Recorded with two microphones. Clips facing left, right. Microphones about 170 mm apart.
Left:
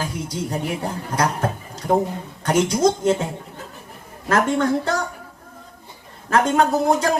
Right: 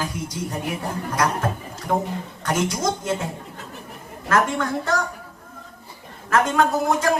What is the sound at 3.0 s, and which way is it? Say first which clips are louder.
Speech: left 6 dB; 30° left (ahead or behind).